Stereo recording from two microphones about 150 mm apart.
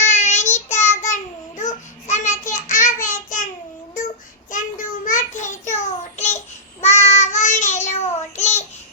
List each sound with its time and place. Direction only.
0.0 s child singing: 50° left (ahead or behind)
4.5 s a sound: 60° left (ahead or behind)
5.7 s child singing: 50° left (ahead or behind)